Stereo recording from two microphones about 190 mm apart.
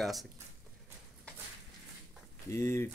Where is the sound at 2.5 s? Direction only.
15° left (ahead or behind).